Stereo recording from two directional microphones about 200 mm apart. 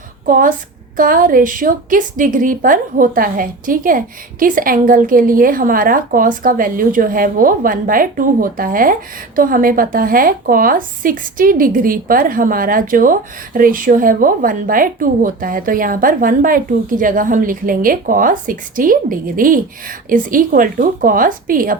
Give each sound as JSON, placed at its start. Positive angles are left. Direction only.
{"t": 0.3, "sound": "a woman's voice", "side_deg": -45}